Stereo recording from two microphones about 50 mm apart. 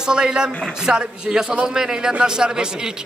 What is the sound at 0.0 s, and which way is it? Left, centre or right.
A man's voice, centre.